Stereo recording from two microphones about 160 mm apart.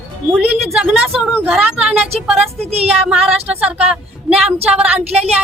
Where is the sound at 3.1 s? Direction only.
5° right (ahead or behind).